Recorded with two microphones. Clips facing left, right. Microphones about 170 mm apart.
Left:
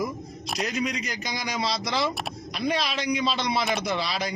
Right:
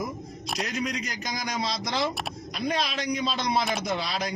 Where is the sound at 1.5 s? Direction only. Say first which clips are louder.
Left 3 dB; 70° left (ahead or behind).